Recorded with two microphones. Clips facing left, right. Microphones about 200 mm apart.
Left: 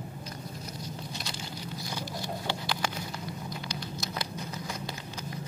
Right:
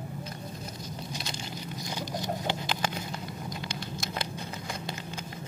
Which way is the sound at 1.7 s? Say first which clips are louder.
Right 3 dB; 20° right (ahead or behind).